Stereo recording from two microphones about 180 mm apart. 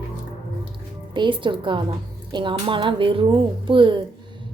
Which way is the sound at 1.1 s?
25° right (ahead or behind).